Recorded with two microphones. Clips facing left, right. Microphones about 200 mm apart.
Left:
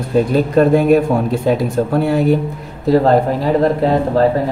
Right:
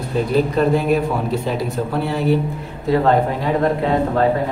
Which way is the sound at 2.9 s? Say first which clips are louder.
Left 4 dB; 35° left (ahead or behind).